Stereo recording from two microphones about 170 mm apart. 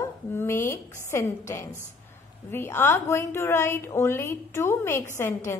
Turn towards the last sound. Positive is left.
turn(degrees=15)  # may be behind; listen again after turning